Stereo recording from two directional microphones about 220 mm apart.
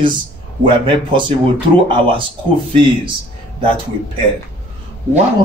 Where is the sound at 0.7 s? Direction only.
20° right (ahead or behind).